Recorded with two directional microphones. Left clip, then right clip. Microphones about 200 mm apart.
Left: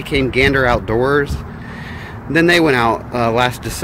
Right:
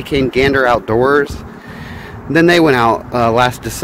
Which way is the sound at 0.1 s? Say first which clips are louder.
Right 1 dB; 20° right (ahead or behind).